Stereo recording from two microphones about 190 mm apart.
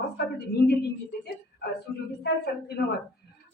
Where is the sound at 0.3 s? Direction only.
55° left (ahead or behind).